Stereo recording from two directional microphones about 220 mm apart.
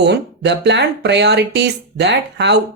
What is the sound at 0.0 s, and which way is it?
Speech, 50° right (ahead or behind).